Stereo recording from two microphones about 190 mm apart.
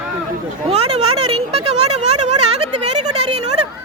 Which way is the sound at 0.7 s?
30° right (ahead or behind).